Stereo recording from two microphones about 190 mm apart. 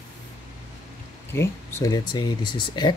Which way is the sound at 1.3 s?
15° left (ahead or behind).